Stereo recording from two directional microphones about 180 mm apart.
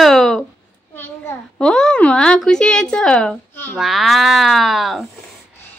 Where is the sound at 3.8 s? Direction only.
Centre (ahead or behind).